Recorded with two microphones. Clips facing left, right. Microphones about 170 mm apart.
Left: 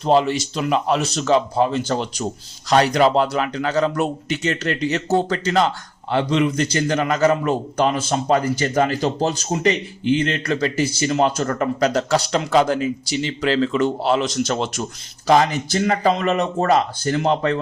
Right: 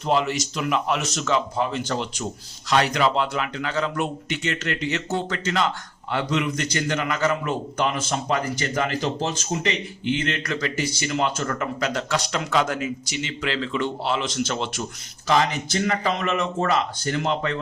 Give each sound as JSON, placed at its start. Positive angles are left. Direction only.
{"t": 0.0, "sound": "speech", "side_deg": 30}